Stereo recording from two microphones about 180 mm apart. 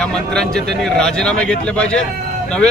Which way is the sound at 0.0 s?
5° left (ahead or behind).